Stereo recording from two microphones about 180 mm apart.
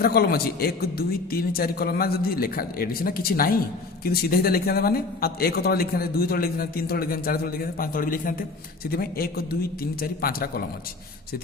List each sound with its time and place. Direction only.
0.0 s a man's voice: 60° left (ahead or behind)